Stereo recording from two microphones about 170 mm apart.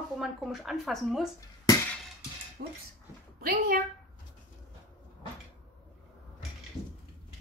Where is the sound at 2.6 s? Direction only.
65° right (ahead or behind).